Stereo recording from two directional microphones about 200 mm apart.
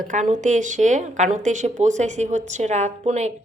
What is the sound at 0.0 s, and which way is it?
A woman's voice, 40° right (ahead or behind).